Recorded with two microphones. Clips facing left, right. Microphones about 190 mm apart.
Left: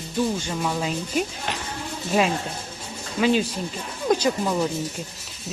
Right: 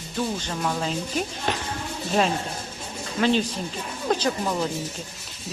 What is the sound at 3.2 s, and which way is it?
Speech, 10° left (ahead or behind).